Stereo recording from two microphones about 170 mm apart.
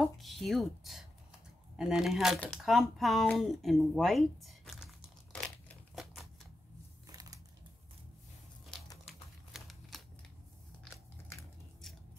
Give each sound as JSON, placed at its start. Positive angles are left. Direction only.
{"t": 0.0, "sound": "speech", "side_deg": 0}
{"t": 5.3, "sound": "crumpling", "side_deg": 5}
{"t": 7.1, "sound": "a sound", "side_deg": -20}
{"t": 9.0, "sound": "typewriter", "side_deg": 0}